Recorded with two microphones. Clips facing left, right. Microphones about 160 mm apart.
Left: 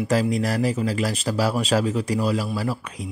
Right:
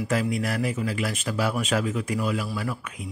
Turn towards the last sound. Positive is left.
turn(degrees=35)  # may be behind; listen again after turning